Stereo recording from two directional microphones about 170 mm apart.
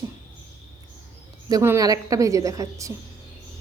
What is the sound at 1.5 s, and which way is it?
A woman's voice, 20° right (ahead or behind).